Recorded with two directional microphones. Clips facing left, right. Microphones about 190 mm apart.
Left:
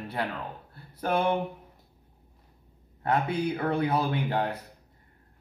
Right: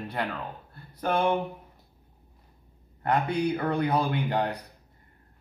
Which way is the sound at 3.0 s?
5° left (ahead or behind).